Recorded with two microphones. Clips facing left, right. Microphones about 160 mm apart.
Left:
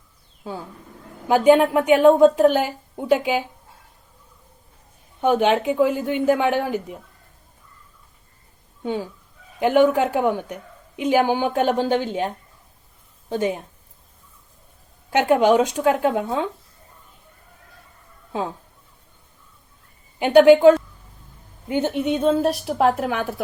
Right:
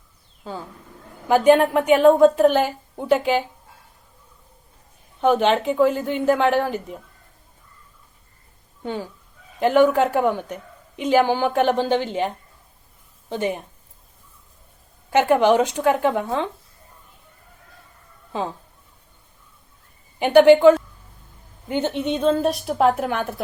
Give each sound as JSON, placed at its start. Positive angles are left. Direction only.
{"t": 0.4, "sound": "a woman's voice", "side_deg": 10}
{"t": 5.2, "sound": "a woman's voice", "side_deg": 10}
{"t": 8.8, "sound": "a woman's voice", "side_deg": 15}
{"t": 13.3, "sound": "a woman's voice", "side_deg": 5}
{"t": 15.1, "sound": "a woman's voice", "side_deg": 10}
{"t": 18.3, "sound": "speech", "side_deg": 5}
{"t": 20.1, "sound": "a woman's voice", "side_deg": 10}